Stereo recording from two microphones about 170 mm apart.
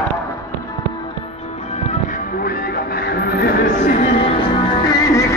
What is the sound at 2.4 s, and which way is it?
Music, 65° left (ahead or behind).